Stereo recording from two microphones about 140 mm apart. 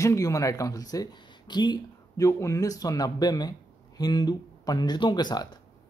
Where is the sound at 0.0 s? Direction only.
20° left (ahead or behind).